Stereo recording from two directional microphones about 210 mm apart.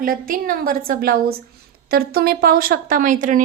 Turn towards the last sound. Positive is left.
turn(degrees=-40)  # may be behind; listen again after turning